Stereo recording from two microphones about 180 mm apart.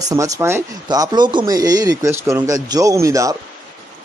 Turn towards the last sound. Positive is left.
turn(degrees=-15)  # may be behind; listen again after turning